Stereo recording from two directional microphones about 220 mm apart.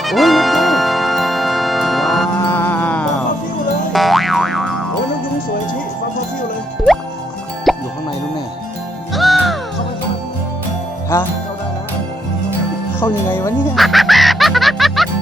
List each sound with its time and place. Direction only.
0.0 s music: centre (ahead or behind)
3.9 s boing: centre (ahead or behind)
7.7 s music: centre (ahead or behind)
9.1 s music: centre (ahead or behind)
11.1 s music: 10° left (ahead or behind)
13.0 s music: 10° left (ahead or behind)